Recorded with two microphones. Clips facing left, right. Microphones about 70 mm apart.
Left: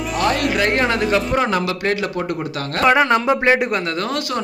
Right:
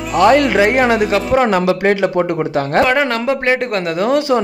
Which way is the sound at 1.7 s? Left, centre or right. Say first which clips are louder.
Right 7 dB; right.